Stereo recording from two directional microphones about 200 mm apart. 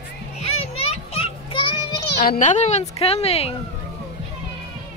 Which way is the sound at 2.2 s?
45° left (ahead or behind).